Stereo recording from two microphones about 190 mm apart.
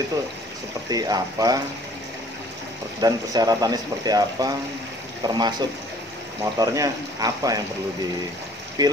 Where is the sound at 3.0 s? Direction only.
20° right (ahead or behind).